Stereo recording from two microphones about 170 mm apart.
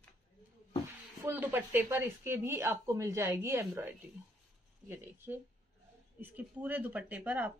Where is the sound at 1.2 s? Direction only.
10° right (ahead or behind).